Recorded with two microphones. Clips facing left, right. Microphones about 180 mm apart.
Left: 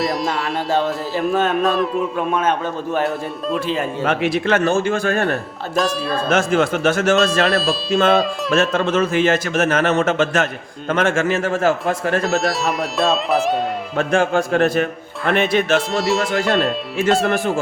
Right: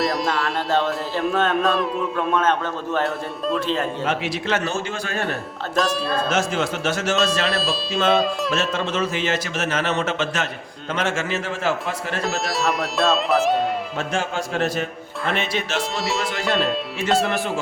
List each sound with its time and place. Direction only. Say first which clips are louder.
0.0 s music: left 1 dB; centre (ahead or behind)
2.1 s a man's voice: right 2 dB; 10° left (ahead or behind)
4.0 s a man's voice: left 6 dB; 55° left (ahead or behind)
7.5 s speech: left 5 dB; centre (ahead or behind)
7.9 s a man's voice: left 3 dB; 55° left (ahead or behind)
12.4 s speech: left 3 dB; centre (ahead or behind)
13.9 s a man's voice: left 8 dB; 55° left (ahead or behind)
15.9 s speech: left 6 dB; centre (ahead or behind)
17.2 s a man's voice: left 5 dB; 50° left (ahead or behind)